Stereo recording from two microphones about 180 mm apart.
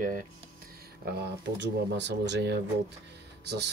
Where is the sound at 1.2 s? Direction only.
75° right (ahead or behind).